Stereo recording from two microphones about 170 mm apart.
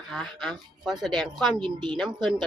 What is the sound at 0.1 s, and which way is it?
A woman's voice, centre (ahead or behind).